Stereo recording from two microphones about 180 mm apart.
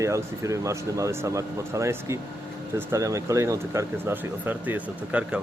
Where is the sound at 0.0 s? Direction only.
15° right (ahead or behind).